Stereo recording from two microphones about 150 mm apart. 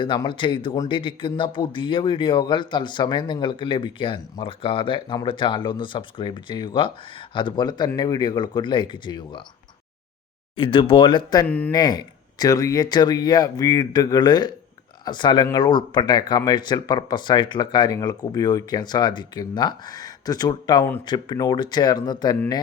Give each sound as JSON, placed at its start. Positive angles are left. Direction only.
{"t": 0.0, "sound": "speech", "side_deg": 35}
{"t": 10.5, "sound": "speech", "side_deg": 35}
{"t": 11.4, "sound": "speech", "side_deg": 10}
{"t": 11.7, "sound": "speech", "side_deg": 25}